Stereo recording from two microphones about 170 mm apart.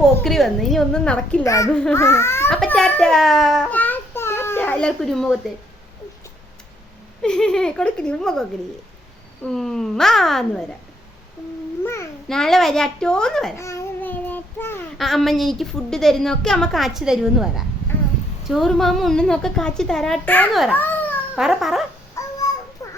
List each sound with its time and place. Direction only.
0.0 s a woman's voice: centre (ahead or behind)
1.5 s a child's voice: 20° left (ahead or behind)
2.6 s a child's voice: 5° left (ahead or behind)
7.2 s a woman's voice: 5° left (ahead or behind)
12.3 s a woman's voice: centre (ahead or behind)
13.6 s child singing: 15° left (ahead or behind)
14.9 s a woman's voice: centre (ahead or behind)
20.5 s a woman's voice: centre (ahead or behind)
22.2 s a sound: 20° left (ahead or behind)